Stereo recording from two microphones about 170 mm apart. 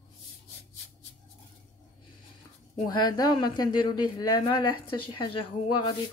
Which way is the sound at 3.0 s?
25° left (ahead or behind).